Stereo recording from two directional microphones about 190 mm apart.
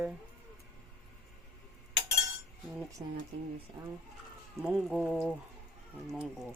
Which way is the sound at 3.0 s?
15° right (ahead or behind).